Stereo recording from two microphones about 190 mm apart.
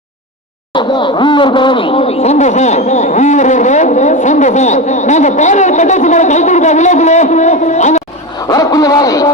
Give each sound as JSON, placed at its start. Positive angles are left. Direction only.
{"t": 0.7, "sound": "speech", "side_deg": 25}
{"t": 8.4, "sound": "a man's voice", "side_deg": 20}